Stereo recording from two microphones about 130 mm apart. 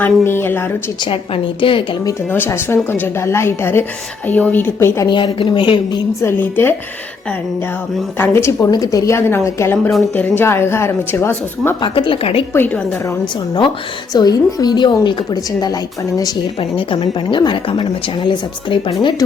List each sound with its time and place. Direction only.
0.0 s speech: 15° left (ahead or behind)
1.6 s a woman's voice: 45° left (ahead or behind)
2.3 s speech: 20° left (ahead or behind)
5.0 s a woman's voice: 35° left (ahead or behind)
6.2 s speech: 15° left (ahead or behind)
8.2 s speech: 20° left (ahead or behind)
11.8 s a woman's voice: 40° left (ahead or behind)
12.5 s speech: 15° left (ahead or behind)
14.1 s a woman's voice: 30° left (ahead or behind)